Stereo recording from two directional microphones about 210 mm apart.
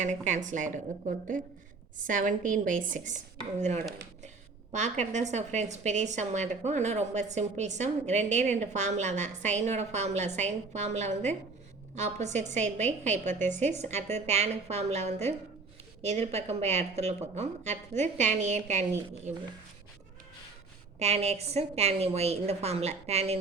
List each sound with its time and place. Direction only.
0.0 s a woman's voice: 35° right (ahead or behind)
21.0 s a woman's voice: 30° right (ahead or behind)